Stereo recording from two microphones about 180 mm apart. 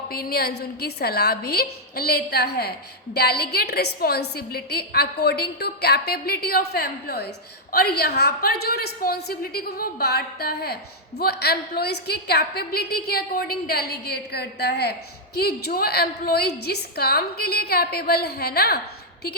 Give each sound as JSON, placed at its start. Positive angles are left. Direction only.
{"t": 0.1, "sound": "a woman's voice", "side_deg": 60}